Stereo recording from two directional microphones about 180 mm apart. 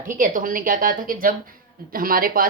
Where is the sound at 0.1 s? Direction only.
50° right (ahead or behind).